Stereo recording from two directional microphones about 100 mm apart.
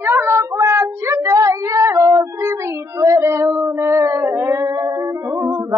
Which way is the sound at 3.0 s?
30° right (ahead or behind).